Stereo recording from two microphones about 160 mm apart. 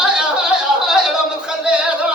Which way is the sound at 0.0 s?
5° right (ahead or behind).